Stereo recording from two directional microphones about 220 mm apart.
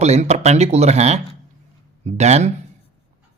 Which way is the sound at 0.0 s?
30° right (ahead or behind).